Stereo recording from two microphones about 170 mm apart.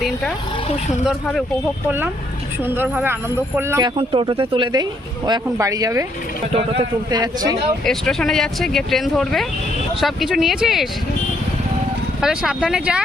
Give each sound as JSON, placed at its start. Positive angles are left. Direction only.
{"t": 1.0, "sound": "speech", "side_deg": 0}
{"t": 2.6, "sound": "speech", "side_deg": -10}
{"t": 7.1, "sound": "speech", "side_deg": -25}
{"t": 7.9, "sound": "speech", "side_deg": 5}
{"t": 12.2, "sound": "speech", "side_deg": -5}